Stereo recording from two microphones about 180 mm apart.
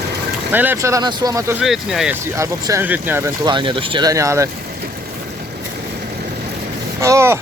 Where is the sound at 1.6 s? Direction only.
Centre (ahead or behind).